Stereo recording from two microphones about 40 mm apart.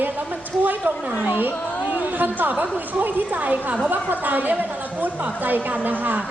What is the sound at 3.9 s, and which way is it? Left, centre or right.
A woman's voice, right.